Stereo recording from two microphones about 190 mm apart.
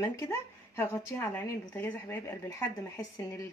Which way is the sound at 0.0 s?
15° left (ahead or behind).